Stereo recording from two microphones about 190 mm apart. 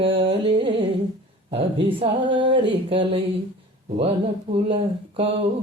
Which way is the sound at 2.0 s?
25° right (ahead or behind).